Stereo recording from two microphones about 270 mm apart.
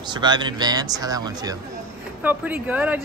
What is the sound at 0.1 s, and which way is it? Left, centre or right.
Speech, centre.